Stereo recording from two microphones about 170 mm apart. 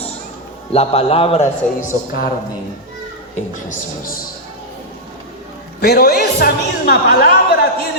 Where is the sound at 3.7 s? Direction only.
55° left (ahead or behind).